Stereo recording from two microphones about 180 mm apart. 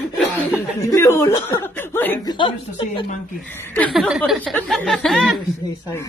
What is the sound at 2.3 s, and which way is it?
Speech, 25° left (ahead or behind).